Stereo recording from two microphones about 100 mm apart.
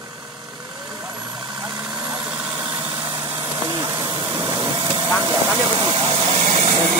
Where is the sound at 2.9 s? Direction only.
50° right (ahead or behind).